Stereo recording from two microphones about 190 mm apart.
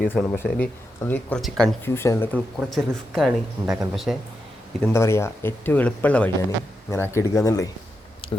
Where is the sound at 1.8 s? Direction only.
10° left (ahead or behind).